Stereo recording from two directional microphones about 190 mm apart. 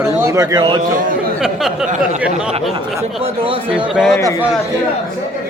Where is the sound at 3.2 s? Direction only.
30° right (ahead or behind).